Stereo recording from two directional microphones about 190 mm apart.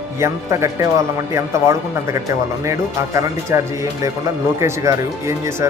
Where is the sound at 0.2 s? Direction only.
15° right (ahead or behind).